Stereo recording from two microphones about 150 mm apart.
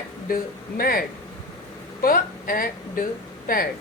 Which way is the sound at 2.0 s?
75° left (ahead or behind).